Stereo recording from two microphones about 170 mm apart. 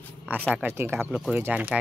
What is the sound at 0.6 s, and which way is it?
Speech, 15° right (ahead or behind).